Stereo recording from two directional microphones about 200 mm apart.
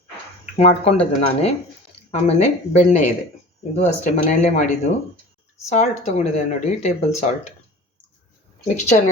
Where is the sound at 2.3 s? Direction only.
35° left (ahead or behind).